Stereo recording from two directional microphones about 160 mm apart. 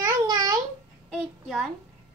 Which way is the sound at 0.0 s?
25° right (ahead or behind).